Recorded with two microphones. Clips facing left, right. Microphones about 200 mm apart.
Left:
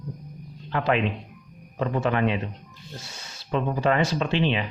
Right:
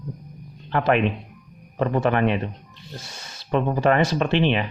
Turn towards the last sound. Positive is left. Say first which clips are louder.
# right 3 dB
turn(degrees=-60)  # may be behind; listen again after turning